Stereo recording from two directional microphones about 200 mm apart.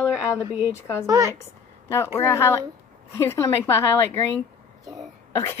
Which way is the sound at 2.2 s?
15° left (ahead or behind).